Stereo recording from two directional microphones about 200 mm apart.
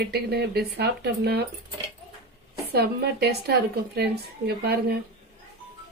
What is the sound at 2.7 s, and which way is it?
A woman's voice, 55° right (ahead or behind).